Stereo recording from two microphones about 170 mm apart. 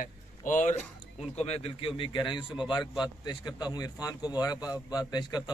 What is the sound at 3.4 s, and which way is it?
Speech, 25° left (ahead or behind).